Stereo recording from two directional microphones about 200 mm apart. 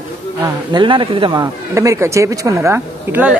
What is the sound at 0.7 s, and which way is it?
Speech, 25° right (ahead or behind).